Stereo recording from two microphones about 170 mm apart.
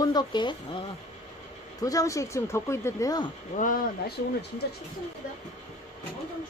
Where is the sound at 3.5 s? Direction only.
55° left (ahead or behind).